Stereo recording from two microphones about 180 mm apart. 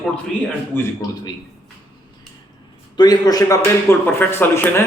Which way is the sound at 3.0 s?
20° left (ahead or behind).